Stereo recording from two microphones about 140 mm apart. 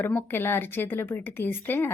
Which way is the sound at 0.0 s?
15° left (ahead or behind).